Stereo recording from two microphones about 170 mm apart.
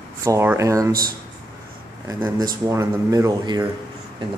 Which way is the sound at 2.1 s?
20° right (ahead or behind).